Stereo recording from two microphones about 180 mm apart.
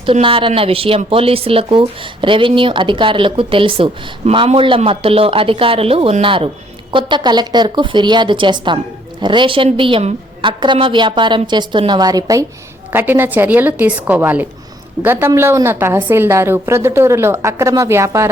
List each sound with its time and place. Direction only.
0.0 s a woman's voice: 30° right (ahead or behind)